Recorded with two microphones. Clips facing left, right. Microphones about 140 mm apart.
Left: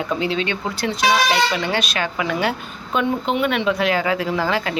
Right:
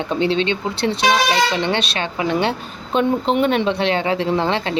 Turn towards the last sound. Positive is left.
turn(degrees=-30)  # may be behind; listen again after turning